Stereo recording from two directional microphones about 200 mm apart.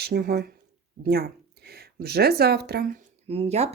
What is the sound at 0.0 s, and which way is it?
Speech, 50° right (ahead or behind).